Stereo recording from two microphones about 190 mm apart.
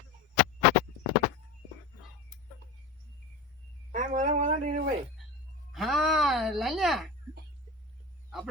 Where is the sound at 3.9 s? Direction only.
40° right (ahead or behind).